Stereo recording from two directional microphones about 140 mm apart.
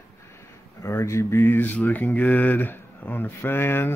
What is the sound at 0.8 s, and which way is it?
Speech, 20° left (ahead or behind).